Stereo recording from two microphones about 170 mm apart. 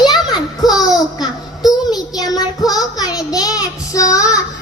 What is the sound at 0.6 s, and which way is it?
Speech, centre (ahead or behind).